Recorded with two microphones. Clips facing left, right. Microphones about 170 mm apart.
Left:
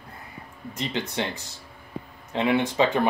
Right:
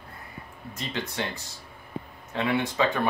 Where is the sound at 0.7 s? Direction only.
25° left (ahead or behind).